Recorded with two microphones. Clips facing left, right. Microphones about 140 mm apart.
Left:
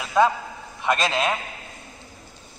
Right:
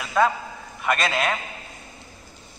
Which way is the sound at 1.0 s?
20° left (ahead or behind).